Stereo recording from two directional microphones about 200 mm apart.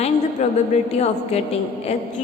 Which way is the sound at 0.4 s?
35° left (ahead or behind).